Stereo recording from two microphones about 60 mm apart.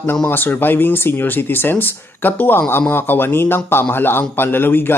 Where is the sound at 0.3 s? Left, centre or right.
Left.